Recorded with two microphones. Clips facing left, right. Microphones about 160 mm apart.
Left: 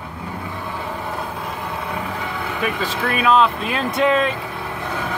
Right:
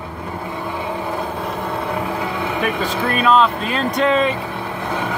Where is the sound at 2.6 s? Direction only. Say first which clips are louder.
Right 1 dB; centre (ahead or behind).